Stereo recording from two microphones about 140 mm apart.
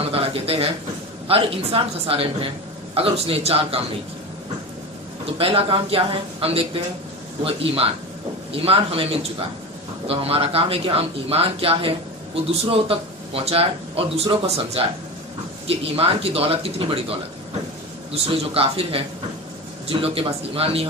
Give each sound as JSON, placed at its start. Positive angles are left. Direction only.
{"t": 0.1, "sound": "a sound", "side_deg": -45}
{"t": 1.3, "sound": "speech", "side_deg": -40}
{"t": 5.4, "sound": "speech", "side_deg": -40}
{"t": 18.1, "sound": "speech", "side_deg": -45}